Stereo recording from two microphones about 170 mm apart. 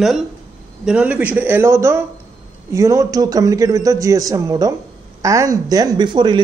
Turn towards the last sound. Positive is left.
turn(degrees=-25)  # may be behind; listen again after turning